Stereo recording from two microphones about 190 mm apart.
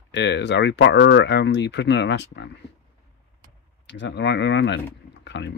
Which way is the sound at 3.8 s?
70° left (ahead or behind).